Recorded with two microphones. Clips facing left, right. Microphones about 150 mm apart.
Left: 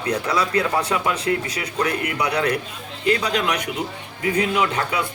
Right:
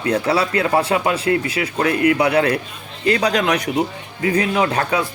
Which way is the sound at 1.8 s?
55° right (ahead or behind).